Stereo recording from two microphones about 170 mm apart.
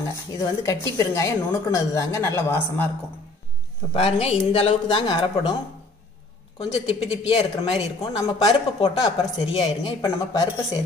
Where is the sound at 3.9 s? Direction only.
35° left (ahead or behind).